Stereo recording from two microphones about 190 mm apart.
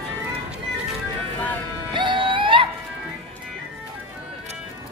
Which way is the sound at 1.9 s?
25° right (ahead or behind).